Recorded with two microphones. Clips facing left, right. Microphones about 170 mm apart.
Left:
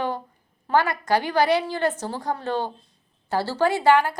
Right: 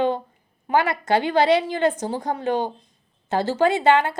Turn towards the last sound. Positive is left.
turn(degrees=-20)  # may be behind; listen again after turning